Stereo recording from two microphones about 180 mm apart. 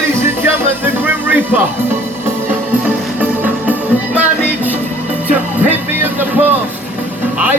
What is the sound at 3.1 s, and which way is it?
Music, 10° right (ahead or behind).